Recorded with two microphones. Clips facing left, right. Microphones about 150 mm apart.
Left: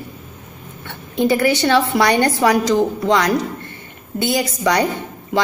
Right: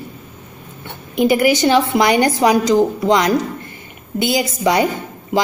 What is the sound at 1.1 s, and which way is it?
A woman's voice, 15° right (ahead or behind).